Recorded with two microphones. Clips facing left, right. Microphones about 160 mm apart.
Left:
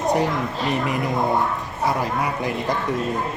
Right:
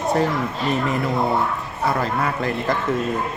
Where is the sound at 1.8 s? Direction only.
15° left (ahead or behind).